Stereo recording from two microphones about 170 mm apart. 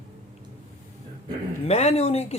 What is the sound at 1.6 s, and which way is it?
Speech, 40° left (ahead or behind).